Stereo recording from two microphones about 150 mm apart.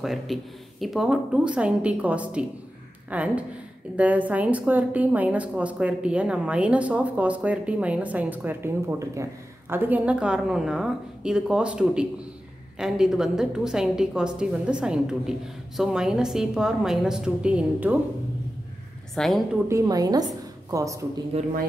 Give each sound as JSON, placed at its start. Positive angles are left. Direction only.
{"t": 0.0, "sound": "a woman's voice", "side_deg": 0}
{"t": 19.1, "sound": "a woman's voice", "side_deg": 0}
{"t": 19.7, "sound": "a woman's voice", "side_deg": -25}
{"t": 21.3, "sound": "a man's voice", "side_deg": -45}